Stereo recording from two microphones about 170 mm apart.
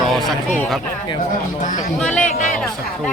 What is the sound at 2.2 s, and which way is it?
Speech, 45° left (ahead or behind).